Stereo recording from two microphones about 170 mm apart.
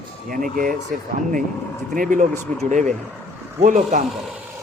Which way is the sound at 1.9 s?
50° right (ahead or behind).